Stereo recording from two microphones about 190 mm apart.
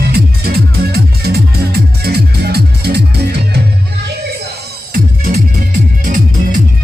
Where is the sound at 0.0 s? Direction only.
55° right (ahead or behind).